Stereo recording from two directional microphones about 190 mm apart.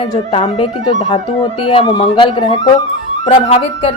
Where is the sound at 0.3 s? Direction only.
30° left (ahead or behind).